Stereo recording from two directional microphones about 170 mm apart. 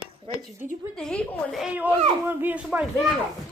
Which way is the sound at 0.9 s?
5° left (ahead or behind).